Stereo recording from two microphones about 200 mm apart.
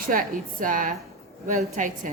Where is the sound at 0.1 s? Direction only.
45° right (ahead or behind).